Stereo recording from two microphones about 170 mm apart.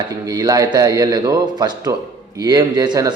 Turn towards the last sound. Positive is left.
turn(degrees=-25)  # may be behind; listen again after turning